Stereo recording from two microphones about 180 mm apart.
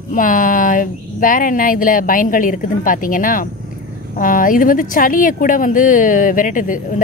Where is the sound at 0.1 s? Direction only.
50° left (ahead or behind).